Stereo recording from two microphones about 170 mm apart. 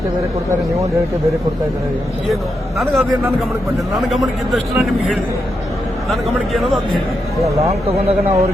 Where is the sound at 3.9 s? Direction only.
Centre (ahead or behind).